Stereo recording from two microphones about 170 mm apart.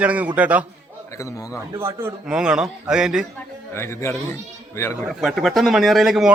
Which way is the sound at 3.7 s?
15° left (ahead or behind).